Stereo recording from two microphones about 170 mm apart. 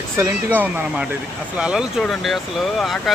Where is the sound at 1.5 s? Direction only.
5° right (ahead or behind).